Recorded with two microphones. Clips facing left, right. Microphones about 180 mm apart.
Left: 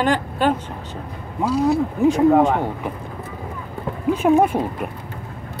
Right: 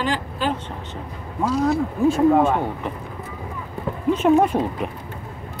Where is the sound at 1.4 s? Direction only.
10° left (ahead or behind).